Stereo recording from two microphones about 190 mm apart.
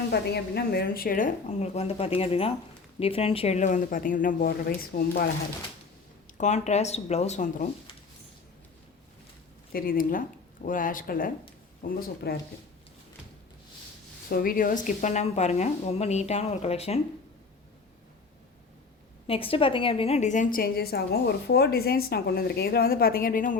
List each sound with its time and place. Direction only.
0.1 s a woman's voice: 55° left (ahead or behind)
6.3 s speech: 40° left (ahead or behind)
9.7 s a woman's voice: 50° left (ahead or behind)
14.3 s speech: 50° left (ahead or behind); by 17.0 s 35° left (ahead or behind)
19.3 s a woman's voice: 30° left (ahead or behind); by 23.6 s 45° left (ahead or behind)